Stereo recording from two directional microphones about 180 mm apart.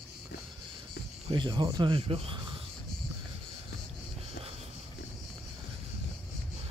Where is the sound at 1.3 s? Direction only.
25° right (ahead or behind).